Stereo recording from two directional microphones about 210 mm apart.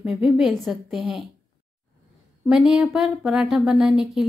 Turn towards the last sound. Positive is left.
turn(degrees=0)  # may be behind; listen again after turning